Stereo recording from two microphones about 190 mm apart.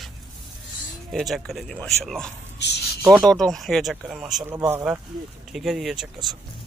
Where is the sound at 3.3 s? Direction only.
Centre (ahead or behind).